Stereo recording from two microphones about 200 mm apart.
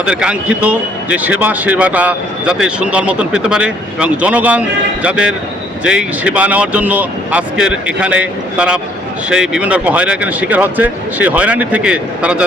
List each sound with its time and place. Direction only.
0.0 s a man's voice: 5° right (ahead or behind)